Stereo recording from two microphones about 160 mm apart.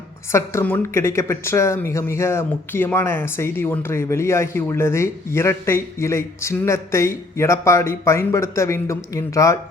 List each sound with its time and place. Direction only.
0.3 s speech: 15° left (ahead or behind)